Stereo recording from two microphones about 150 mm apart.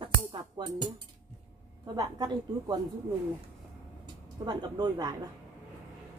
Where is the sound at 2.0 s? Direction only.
25° right (ahead or behind).